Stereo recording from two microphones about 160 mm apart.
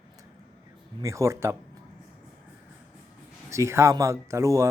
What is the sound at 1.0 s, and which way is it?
Speech, 20° right (ahead or behind).